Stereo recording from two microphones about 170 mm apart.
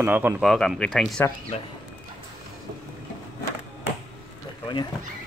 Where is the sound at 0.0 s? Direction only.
10° right (ahead or behind).